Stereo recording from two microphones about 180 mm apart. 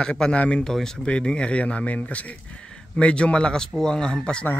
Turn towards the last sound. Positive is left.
turn(degrees=5)  # may be behind; listen again after turning